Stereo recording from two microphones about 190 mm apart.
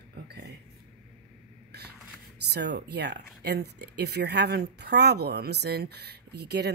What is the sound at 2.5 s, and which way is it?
Speech, 60° right (ahead or behind).